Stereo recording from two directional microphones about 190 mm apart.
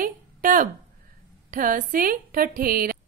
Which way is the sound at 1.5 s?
45° right (ahead or behind).